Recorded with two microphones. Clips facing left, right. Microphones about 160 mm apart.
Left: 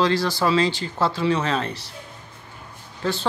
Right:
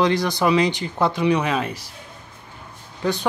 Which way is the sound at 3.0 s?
15° right (ahead or behind).